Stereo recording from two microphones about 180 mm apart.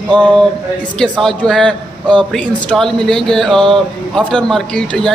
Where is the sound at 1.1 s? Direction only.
Centre (ahead or behind).